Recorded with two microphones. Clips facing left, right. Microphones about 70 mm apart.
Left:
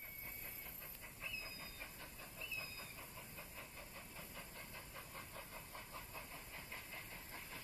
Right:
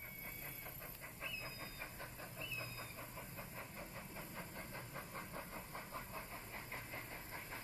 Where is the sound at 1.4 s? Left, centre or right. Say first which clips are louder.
Right 3 dB; right.